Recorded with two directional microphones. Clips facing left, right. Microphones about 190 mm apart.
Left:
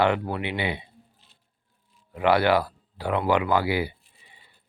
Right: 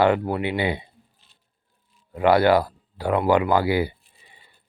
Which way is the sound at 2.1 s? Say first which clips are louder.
Right 4 dB; 40° right (ahead or behind).